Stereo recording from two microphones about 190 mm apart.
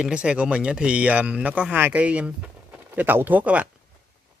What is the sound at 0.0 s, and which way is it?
Speech, 5° right (ahead or behind).